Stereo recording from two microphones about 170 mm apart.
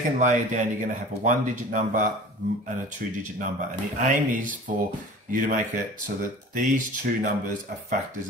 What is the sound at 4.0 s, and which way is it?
Speech, 50° right (ahead or behind).